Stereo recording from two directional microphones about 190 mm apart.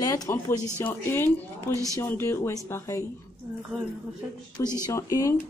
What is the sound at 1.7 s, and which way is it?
Speech, 15° right (ahead or behind).